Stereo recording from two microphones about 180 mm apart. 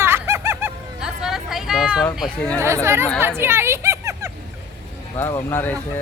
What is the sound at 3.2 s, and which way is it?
Hubbub, 10° right (ahead or behind).